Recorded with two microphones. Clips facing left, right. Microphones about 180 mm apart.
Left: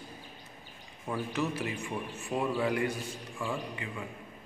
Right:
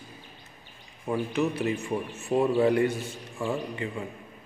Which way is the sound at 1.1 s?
20° right (ahead or behind).